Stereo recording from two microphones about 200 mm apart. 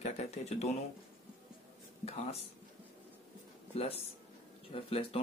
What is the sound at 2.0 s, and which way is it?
Speech, 30° left (ahead or behind).